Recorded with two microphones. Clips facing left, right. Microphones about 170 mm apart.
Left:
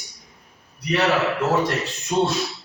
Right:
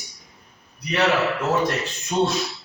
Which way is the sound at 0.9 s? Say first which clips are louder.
Even; centre (ahead or behind).